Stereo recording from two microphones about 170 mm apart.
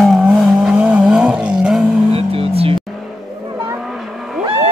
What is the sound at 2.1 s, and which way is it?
Vehicle, 35° right (ahead or behind).